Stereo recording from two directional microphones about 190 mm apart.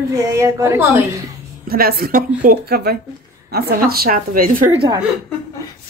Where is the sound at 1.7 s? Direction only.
50° right (ahead or behind).